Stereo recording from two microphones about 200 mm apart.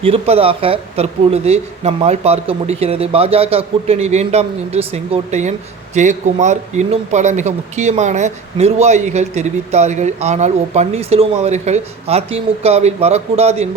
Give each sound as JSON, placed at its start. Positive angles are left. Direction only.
{"t": 0.0, "sound": "speech", "side_deg": -30}